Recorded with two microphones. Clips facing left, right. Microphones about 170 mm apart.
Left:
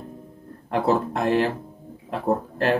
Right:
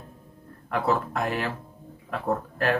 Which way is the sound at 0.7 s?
25° left (ahead or behind).